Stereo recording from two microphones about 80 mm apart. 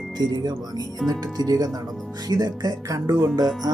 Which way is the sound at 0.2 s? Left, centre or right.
Right.